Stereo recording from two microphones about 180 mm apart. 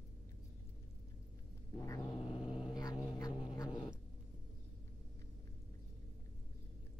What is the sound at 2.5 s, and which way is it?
Cat, 5° right (ahead or behind).